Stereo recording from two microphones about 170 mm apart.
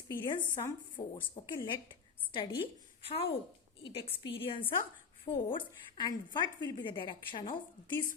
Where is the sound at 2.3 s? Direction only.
30° left (ahead or behind).